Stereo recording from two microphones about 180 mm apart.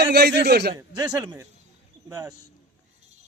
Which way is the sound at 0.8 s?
20° right (ahead or behind).